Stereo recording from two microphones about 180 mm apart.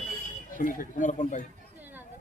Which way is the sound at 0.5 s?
50° left (ahead or behind).